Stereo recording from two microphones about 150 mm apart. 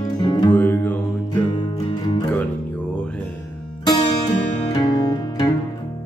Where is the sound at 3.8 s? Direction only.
30° left (ahead or behind).